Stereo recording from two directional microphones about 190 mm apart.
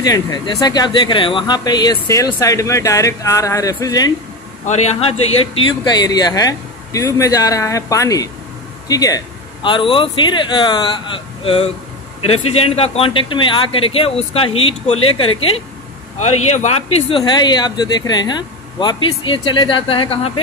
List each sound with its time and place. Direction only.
0.0 s speech: 20° left (ahead or behind)
4.6 s speech: 35° left (ahead or behind)
5.9 s speech: 20° left (ahead or behind)
17.2 s speech: 20° left (ahead or behind)